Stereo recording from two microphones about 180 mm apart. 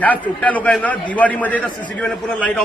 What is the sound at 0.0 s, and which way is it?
A man's voice, 10° left (ahead or behind).